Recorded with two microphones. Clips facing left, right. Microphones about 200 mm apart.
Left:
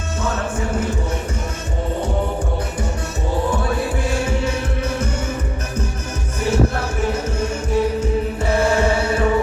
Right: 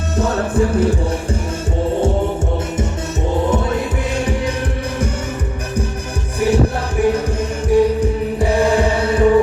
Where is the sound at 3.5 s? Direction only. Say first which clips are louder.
Right 3 dB; 20° right (ahead or behind).